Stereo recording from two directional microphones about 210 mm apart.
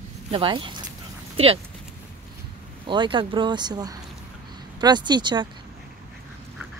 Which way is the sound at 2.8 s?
25° right (ahead or behind).